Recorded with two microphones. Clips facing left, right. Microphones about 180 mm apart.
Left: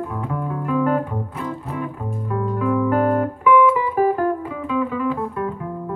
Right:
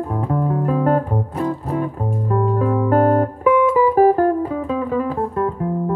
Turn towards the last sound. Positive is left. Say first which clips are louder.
# right 2 dB
turn(degrees=-40)  # may be behind; listen again after turning